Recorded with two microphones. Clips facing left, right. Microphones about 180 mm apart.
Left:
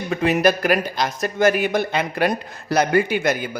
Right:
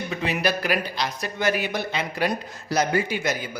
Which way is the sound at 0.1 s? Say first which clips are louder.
Left 9 dB; 50° left (ahead or behind).